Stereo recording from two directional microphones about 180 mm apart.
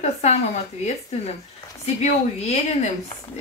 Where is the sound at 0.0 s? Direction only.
40° left (ahead or behind).